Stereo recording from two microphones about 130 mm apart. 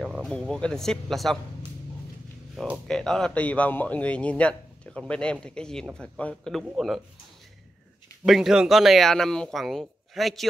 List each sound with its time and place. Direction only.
0.2 s speech: 5° left (ahead or behind)
2.6 s a man's voice: centre (ahead or behind)
8.3 s speech: 5° right (ahead or behind)